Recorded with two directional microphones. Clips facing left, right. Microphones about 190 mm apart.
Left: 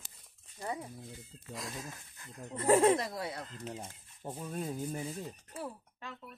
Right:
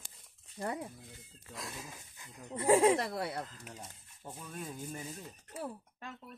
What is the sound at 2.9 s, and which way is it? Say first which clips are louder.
Speech: right 1 dB; 60° right (ahead or behind).